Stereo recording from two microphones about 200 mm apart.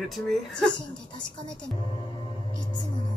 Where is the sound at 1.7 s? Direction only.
25° left (ahead or behind).